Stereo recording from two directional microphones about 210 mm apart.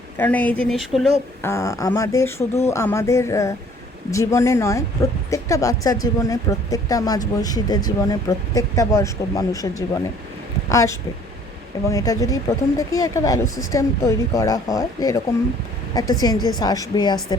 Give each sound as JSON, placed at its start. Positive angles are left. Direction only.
{"t": 0.2, "sound": "speech", "side_deg": 10}
{"t": 1.5, "sound": "a woman's voice", "side_deg": 15}